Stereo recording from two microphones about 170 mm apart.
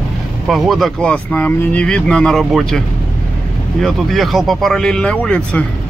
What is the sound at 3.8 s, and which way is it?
Speech, centre (ahead or behind).